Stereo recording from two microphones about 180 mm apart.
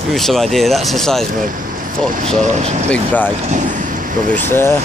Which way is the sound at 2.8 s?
10° left (ahead or behind).